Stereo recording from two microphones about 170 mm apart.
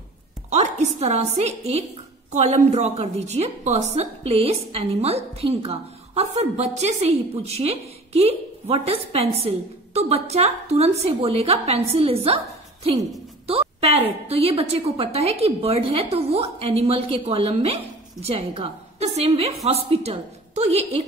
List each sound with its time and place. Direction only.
0.5 s a woman's voice: 40° right (ahead or behind)
13.5 s a sound: 35° right (ahead or behind)
14.2 s a woman's voice: 35° right (ahead or behind)